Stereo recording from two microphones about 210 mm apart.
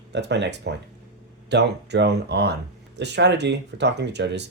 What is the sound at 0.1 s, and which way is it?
Speech, 55° right (ahead or behind).